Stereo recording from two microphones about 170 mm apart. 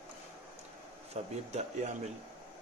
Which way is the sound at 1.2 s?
45° right (ahead or behind).